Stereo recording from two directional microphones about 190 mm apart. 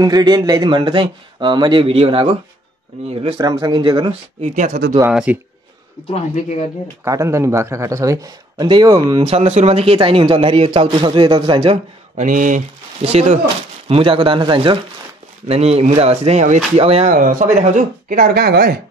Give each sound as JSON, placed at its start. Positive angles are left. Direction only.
{"t": 0.0, "sound": "a man's voice", "side_deg": -20}
{"t": 5.0, "sound": "a man's voice", "side_deg": -5}
{"t": 6.0, "sound": "speech", "side_deg": 35}
{"t": 7.1, "sound": "a man's voice", "side_deg": -15}